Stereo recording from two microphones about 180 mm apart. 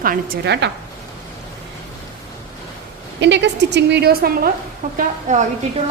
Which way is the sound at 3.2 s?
75° right (ahead or behind).